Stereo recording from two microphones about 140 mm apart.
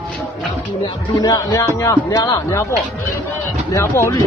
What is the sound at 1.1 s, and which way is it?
Speech, 25° left (ahead or behind).